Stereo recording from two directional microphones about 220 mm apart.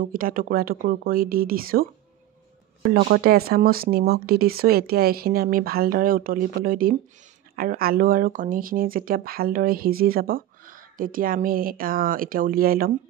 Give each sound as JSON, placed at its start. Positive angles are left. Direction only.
{"t": 0.0, "sound": "speech", "side_deg": -40}
{"t": 3.0, "sound": "speech", "side_deg": -45}